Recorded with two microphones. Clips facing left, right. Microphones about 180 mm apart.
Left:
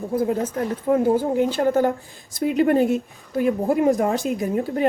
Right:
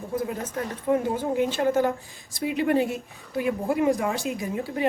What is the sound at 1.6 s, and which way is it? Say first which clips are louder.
A woman's voice: left 3 dB; 40° left (ahead or behind).